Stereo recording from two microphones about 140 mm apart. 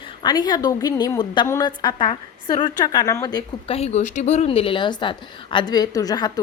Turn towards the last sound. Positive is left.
turn(degrees=30)  # may be behind; listen again after turning